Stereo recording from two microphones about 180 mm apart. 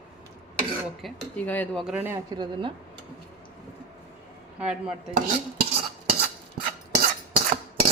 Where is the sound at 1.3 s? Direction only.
10° left (ahead or behind).